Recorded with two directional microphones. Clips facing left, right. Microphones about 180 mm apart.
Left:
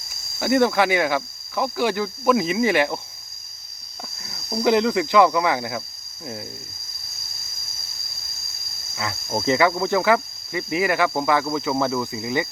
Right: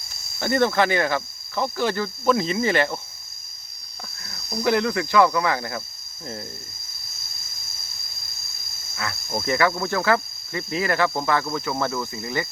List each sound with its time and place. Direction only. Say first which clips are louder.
0.3 s speech: left 2 dB; 10° left (ahead or behind)
4.2 s speech: left 3 dB; 20° left (ahead or behind)
9.0 s speech: left 2 dB; 20° left (ahead or behind)